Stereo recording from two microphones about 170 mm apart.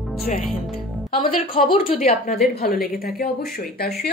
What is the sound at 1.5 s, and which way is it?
Speech, 30° left (ahead or behind).